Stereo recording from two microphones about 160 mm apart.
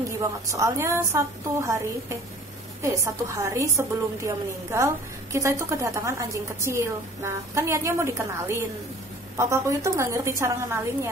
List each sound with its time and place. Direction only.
0.5 s a woman's voice: 20° right (ahead or behind)